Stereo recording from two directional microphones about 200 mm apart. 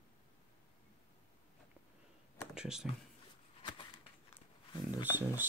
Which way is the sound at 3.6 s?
25° left (ahead or behind).